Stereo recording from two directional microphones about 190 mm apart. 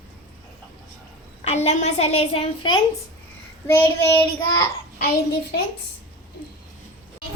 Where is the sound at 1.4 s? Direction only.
35° left (ahead or behind).